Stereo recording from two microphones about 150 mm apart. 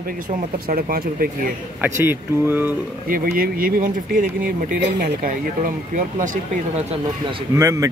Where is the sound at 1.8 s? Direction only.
15° right (ahead or behind).